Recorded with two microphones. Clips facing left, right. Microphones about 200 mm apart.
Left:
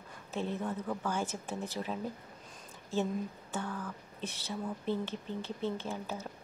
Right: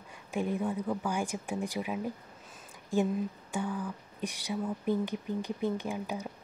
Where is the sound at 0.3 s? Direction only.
10° right (ahead or behind).